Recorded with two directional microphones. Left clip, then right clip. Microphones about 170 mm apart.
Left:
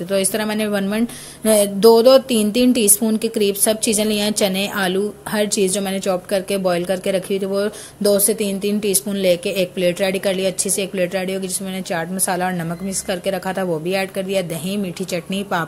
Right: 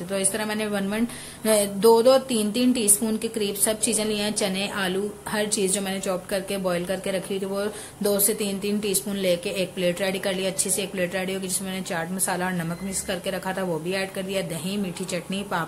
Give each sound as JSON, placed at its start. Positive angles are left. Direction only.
{"t": 0.1, "sound": "speech", "side_deg": 30}